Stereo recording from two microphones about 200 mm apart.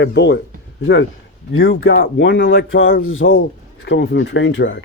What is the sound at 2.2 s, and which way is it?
Speech, 65° left (ahead or behind).